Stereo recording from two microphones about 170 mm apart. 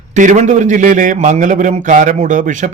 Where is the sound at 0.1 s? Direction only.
45° right (ahead or behind).